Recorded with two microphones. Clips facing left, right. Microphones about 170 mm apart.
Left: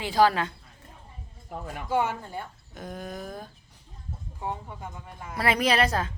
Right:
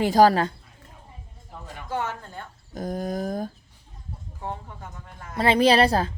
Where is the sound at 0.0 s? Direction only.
45° right (ahead or behind).